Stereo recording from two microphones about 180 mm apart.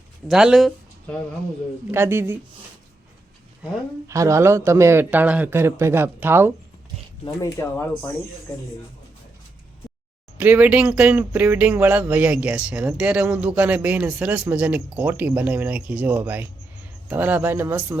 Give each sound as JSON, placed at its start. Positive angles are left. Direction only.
{"t": 0.3, "sound": "speech", "side_deg": -5}
{"t": 1.9, "sound": "speech", "side_deg": -15}
{"t": 4.0, "sound": "speech", "side_deg": -15}
{"t": 7.3, "sound": "speech", "side_deg": 15}
{"t": 10.3, "sound": "speech", "side_deg": -10}